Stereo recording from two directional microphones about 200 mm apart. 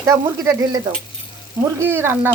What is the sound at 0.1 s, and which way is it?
Speech, 15° right (ahead or behind).